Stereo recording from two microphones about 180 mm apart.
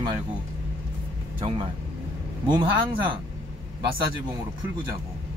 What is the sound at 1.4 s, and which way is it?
A man's voice, 30° right (ahead or behind).